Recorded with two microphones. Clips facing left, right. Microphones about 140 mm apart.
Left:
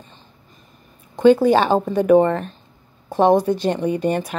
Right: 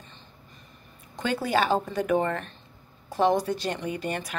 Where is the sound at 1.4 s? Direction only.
45° left (ahead or behind).